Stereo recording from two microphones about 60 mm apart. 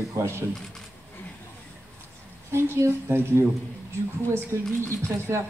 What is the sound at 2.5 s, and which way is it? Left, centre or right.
Speech, right.